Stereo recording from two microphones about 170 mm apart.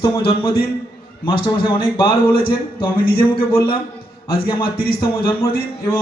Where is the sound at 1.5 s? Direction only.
30° left (ahead or behind).